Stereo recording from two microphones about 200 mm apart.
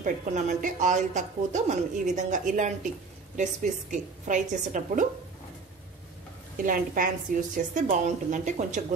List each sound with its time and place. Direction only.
0.0 s a woman's voice: 40° right (ahead or behind)
3.9 s a woman's voice: 40° right (ahead or behind)
6.6 s a woman's voice: 40° right (ahead or behind)